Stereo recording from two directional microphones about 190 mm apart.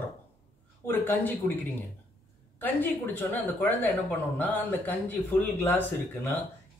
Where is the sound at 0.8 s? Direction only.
10° left (ahead or behind).